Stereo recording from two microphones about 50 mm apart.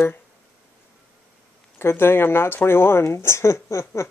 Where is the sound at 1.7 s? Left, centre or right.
Left.